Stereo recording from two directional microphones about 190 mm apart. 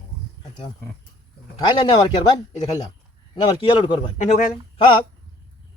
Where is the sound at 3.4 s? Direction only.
25° left (ahead or behind).